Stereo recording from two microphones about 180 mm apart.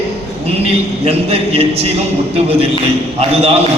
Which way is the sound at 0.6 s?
35° right (ahead or behind).